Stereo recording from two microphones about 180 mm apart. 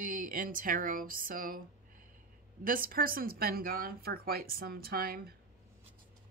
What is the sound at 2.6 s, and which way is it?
Speech, 50° right (ahead or behind).